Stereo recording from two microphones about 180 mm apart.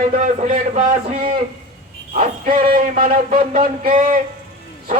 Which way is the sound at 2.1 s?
50° right (ahead or behind).